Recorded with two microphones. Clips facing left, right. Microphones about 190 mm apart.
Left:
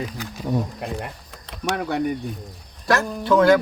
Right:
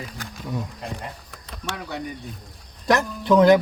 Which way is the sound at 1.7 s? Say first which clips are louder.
Left 8 dB; 60° left (ahead or behind).